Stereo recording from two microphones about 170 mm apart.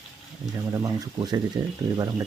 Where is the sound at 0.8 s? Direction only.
25° right (ahead or behind).